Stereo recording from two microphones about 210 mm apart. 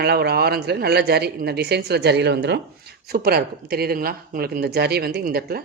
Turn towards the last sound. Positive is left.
turn(degrees=-45)  # may be behind; listen again after turning